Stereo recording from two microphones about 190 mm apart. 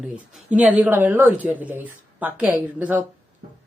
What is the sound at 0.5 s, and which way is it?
Speech, 5° right (ahead or behind).